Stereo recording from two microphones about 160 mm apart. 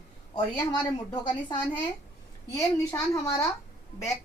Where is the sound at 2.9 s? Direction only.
15° left (ahead or behind).